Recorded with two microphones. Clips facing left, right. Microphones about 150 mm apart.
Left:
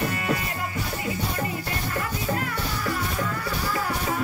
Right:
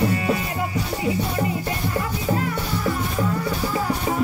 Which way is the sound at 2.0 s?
20° right (ahead or behind).